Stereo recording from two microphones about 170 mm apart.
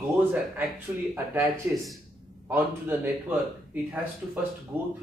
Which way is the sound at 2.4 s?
10° right (ahead or behind).